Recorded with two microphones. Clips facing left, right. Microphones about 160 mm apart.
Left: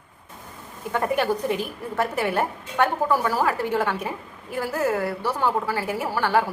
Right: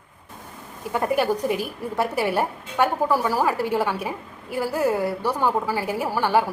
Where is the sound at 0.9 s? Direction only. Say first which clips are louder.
Right 1 dB; 10° right (ahead or behind).